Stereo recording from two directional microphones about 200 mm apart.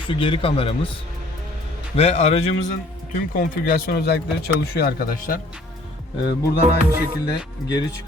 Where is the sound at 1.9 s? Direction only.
30° left (ahead or behind).